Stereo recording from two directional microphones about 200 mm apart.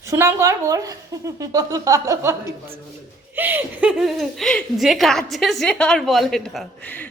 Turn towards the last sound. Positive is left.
turn(degrees=10)  # may be behind; listen again after turning